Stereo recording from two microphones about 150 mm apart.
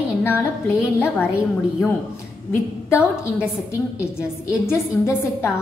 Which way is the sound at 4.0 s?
20° left (ahead or behind).